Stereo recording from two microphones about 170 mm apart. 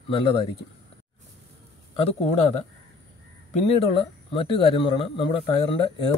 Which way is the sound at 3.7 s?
30° left (ahead or behind).